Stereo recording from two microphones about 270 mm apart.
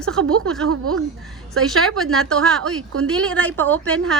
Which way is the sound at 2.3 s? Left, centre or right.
Centre.